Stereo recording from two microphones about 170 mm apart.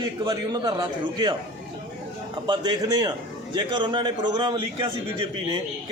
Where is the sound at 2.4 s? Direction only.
25° right (ahead or behind).